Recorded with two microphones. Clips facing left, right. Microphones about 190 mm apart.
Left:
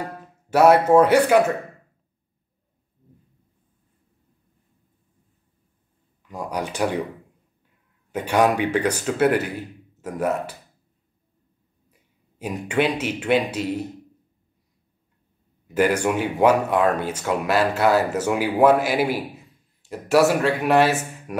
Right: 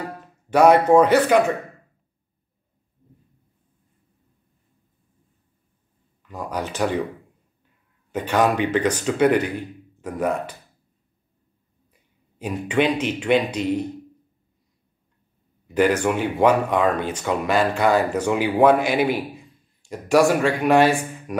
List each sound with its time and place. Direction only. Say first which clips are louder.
0.5 s speech: right 1 dB; 5° left (ahead or behind)
6.3 s speech: even; 10° left (ahead or behind)
8.1 s speech: left 1 dB; 10° left (ahead or behind)
11.9 s speech: left 1 dB; 10° left (ahead or behind)
15.7 s speech: right 1 dB; 10° left (ahead or behind)